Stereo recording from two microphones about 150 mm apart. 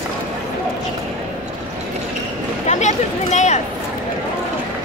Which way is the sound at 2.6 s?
50° left (ahead or behind).